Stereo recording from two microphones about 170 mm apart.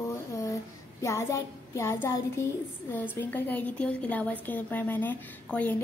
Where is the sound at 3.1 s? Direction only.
10° left (ahead or behind).